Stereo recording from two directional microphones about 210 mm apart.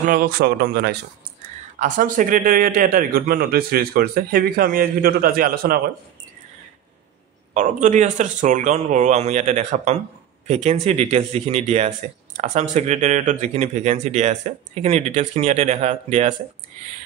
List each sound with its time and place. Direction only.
0.0 s a man's voice: 45° right (ahead or behind)
1.8 s a man's voice: 40° right (ahead or behind)
7.5 s a man's voice: 35° right (ahead or behind)